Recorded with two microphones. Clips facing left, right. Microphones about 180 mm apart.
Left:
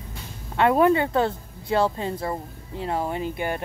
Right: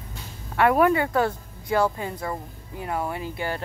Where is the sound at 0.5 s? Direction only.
25° left (ahead or behind).